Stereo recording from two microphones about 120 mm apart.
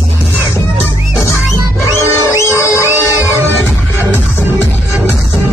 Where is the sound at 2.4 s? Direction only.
25° left (ahead or behind).